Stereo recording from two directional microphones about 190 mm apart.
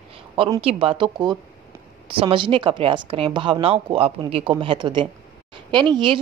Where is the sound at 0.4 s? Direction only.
30° right (ahead or behind).